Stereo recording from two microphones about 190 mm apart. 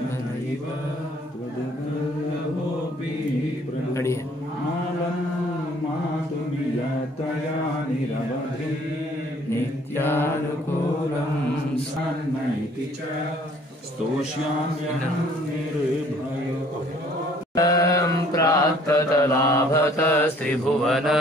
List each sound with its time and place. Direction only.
3.9 s a sound: 15° left (ahead or behind)
9.5 s mantra: 10° left (ahead or behind)
17.6 s mantra: 20° left (ahead or behind)
20.8 s mantra: centre (ahead or behind)